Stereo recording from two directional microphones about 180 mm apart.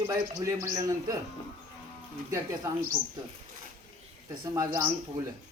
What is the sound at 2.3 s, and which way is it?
Speech, 15° right (ahead or behind).